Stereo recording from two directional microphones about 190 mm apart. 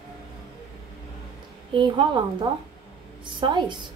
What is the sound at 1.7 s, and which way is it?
A woman's voice, 25° right (ahead or behind).